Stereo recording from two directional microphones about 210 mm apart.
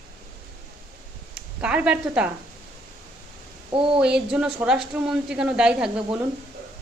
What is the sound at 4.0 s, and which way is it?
A woman's voice, 5° right (ahead or behind).